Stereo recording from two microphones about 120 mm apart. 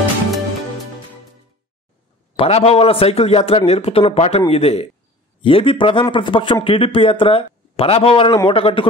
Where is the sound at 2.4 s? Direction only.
60° left (ahead or behind).